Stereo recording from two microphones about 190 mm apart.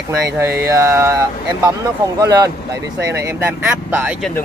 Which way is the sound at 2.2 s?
20° right (ahead or behind).